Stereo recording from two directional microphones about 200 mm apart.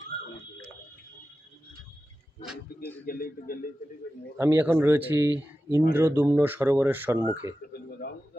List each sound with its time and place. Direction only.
3.1 s a man's voice: 45° left (ahead or behind)
4.4 s speech: 10° right (ahead or behind)
7.7 s a sound: 55° left (ahead or behind)